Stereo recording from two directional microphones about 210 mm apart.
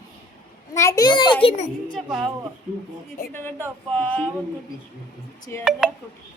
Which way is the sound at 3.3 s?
10° left (ahead or behind).